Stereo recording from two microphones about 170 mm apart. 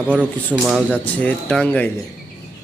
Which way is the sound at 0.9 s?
10° left (ahead or behind).